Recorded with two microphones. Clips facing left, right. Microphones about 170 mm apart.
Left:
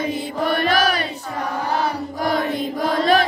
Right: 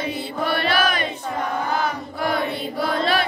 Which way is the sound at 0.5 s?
45° left (ahead or behind).